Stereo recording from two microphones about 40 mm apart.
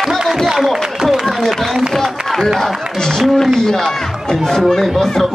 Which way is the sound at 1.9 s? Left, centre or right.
Centre.